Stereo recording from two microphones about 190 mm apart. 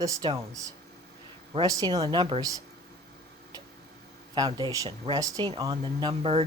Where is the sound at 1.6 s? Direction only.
20° right (ahead or behind).